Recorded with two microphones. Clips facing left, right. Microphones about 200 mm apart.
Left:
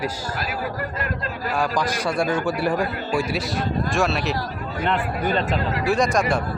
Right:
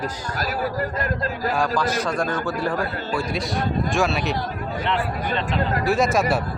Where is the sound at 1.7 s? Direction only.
15° left (ahead or behind).